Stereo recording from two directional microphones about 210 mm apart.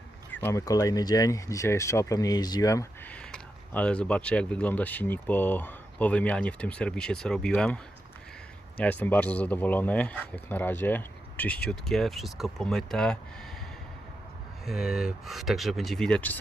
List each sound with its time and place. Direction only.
0.3 s speech: 10° left (ahead or behind)
8.8 s speech: 10° left (ahead or behind)
14.7 s speech: centre (ahead or behind)